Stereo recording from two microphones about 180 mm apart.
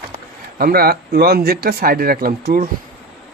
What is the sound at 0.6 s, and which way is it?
Speech, 55° right (ahead or behind).